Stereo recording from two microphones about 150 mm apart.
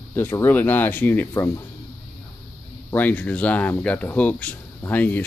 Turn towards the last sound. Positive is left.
turn(degrees=10)  # may be behind; listen again after turning